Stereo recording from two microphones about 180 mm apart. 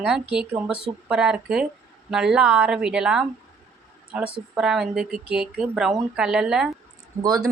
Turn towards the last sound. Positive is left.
turn(degrees=-20)  # may be behind; listen again after turning